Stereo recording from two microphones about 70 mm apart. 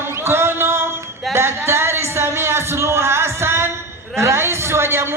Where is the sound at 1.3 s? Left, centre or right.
Right.